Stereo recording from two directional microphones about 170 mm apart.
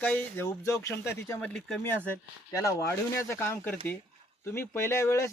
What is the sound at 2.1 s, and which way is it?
Speech, 15° left (ahead or behind).